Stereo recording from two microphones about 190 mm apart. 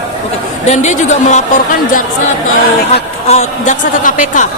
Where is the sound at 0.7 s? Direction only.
40° left (ahead or behind).